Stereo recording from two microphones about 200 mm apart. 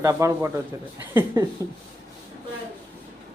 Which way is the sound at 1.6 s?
15° right (ahead or behind).